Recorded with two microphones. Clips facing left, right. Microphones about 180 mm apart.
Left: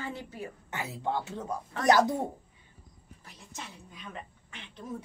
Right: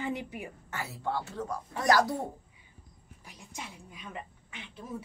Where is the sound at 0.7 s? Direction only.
20° left (ahead or behind).